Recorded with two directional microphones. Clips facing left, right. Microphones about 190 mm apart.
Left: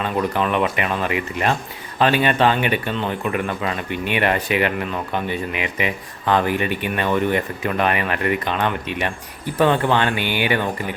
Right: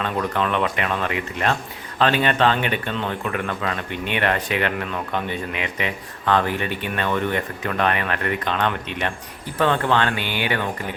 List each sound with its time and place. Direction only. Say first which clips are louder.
0.0 s speech: left 2 dB; 10° left (ahead or behind)